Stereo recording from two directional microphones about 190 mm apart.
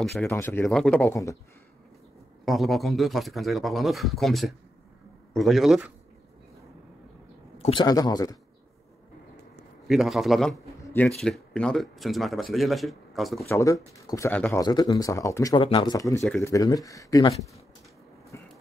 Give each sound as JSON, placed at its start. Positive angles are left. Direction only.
{"t": 0.3, "sound": "speech", "side_deg": 15}
{"t": 2.4, "sound": "speech", "side_deg": 0}
{"t": 7.5, "sound": "a man's voice", "side_deg": 30}
{"t": 9.8, "sound": "speech", "side_deg": 0}
{"t": 13.5, "sound": "speech", "side_deg": 15}
{"t": 18.3, "sound": "a sound", "side_deg": 15}